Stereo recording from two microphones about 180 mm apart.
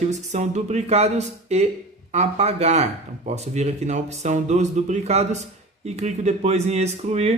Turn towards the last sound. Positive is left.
turn(degrees=-40)  # may be behind; listen again after turning